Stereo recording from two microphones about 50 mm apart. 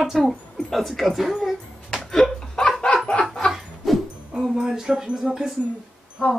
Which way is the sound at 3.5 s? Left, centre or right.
Centre.